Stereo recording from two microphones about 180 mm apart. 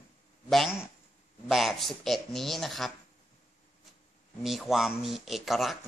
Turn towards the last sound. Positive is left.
turn(degrees=0)  # may be behind; listen again after turning